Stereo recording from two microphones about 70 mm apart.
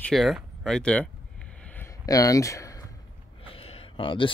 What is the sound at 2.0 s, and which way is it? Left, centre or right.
Speech, left.